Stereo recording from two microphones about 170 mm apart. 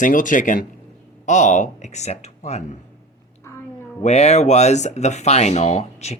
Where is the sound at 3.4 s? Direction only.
15° left (ahead or behind).